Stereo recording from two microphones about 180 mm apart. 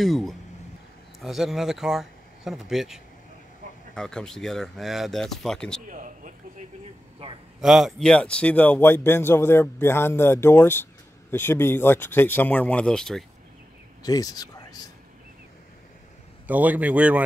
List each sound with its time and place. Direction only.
0.0 s speech: centre (ahead or behind)
5.9 s a sound: 45° right (ahead or behind)
7.6 s a man's voice: centre (ahead or behind)
14.0 s speech: 20° left (ahead or behind)
16.4 s a man's voice: 10° right (ahead or behind)